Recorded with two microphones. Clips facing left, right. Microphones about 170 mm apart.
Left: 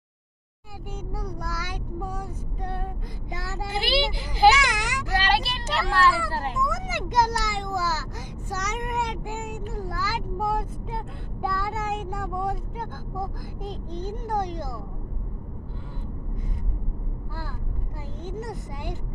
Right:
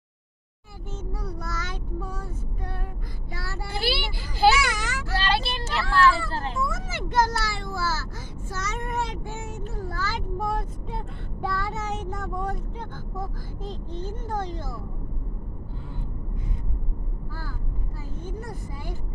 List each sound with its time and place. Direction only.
1.2 s child singing: 10° left (ahead or behind)
11.4 s speech: 5° left (ahead or behind)
18.2 s speech: 20° left (ahead or behind)